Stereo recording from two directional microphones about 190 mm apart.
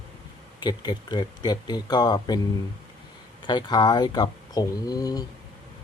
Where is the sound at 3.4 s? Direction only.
25° left (ahead or behind).